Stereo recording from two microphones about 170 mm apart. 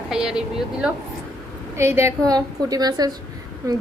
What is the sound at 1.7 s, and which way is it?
A woman's voice, 15° right (ahead or behind).